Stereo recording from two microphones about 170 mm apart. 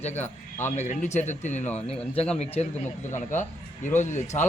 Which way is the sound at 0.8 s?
45° left (ahead or behind).